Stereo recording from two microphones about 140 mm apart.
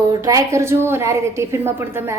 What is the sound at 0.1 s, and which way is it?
A woman's voice, 25° right (ahead or behind).